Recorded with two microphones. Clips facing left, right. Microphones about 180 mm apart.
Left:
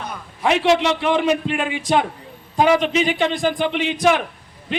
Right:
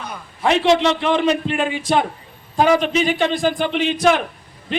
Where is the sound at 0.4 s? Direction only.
10° left (ahead or behind).